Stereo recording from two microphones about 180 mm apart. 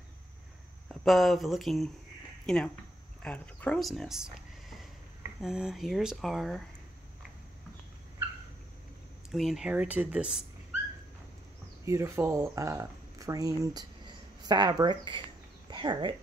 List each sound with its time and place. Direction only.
1.0 s speech: centre (ahead or behind)
9.3 s speech: centre (ahead or behind)
11.8 s speech: 15° right (ahead or behind)